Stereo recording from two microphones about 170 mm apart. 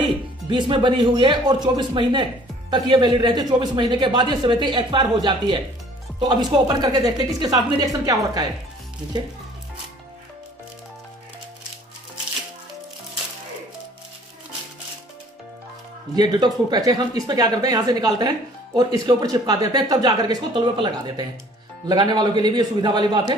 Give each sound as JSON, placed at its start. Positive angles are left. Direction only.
{"t": 0.0, "sound": "a man's voice", "side_deg": -30}
{"t": 16.2, "sound": "a man's voice", "side_deg": -25}